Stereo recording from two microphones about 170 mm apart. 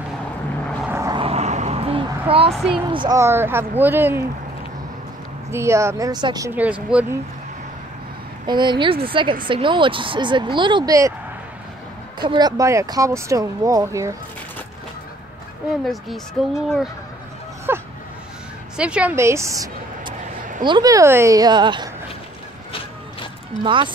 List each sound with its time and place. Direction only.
0.8 s vehicle: 15° right (ahead or behind)
1.1 s a sound: 35° right (ahead or behind)
2.5 s speech: centre (ahead or behind)
2.9 s speech: 30° right (ahead or behind)
3.2 s speech: 15° right (ahead or behind)
5.5 s speech: 15° right (ahead or behind)
6.5 s speech: 10° right (ahead or behind)
8.5 s speech: 25° right (ahead or behind)
12.2 s speech: 25° right (ahead or behind)
15.8 s speech: centre (ahead or behind)
17.7 s a woman's voice: 15° right (ahead or behind)
23.6 s speech: 30° right (ahead or behind)